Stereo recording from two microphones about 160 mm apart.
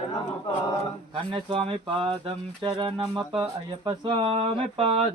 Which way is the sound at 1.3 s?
35° right (ahead or behind).